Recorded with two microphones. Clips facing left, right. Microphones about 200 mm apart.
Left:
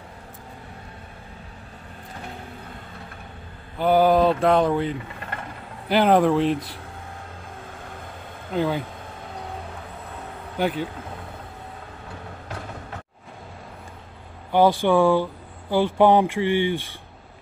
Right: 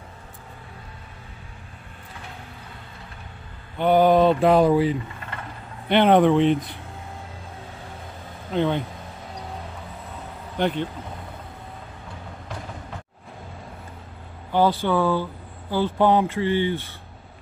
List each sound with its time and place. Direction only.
3.7 s mantra: 5° left (ahead or behind)
8.5 s mantra: 5° left (ahead or behind)
10.6 s mantra: 5° left (ahead or behind)
14.5 s speech: 15° left (ahead or behind)